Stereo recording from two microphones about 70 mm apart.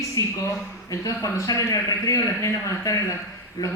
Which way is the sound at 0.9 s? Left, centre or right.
Left.